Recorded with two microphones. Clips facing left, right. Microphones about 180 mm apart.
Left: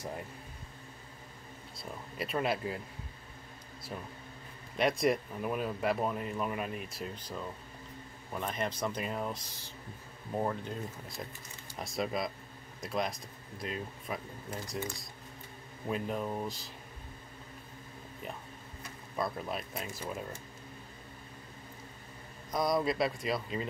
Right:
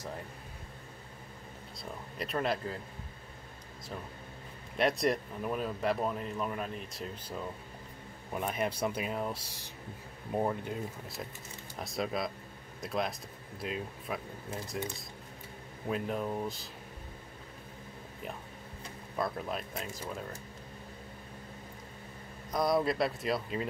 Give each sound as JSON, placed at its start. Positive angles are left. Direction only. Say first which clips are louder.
{"t": 1.8, "sound": "speech", "louder": "left 1 dB", "side_deg": 5}
{"t": 4.7, "sound": "speech", "louder": "even", "side_deg": 0}
{"t": 8.3, "sound": "speech", "louder": "right 2 dB", "side_deg": -10}
{"t": 19.1, "sound": "speech", "louder": "right 1 dB", "side_deg": 0}
{"t": 22.5, "sound": "speech", "louder": "right 1 dB", "side_deg": 0}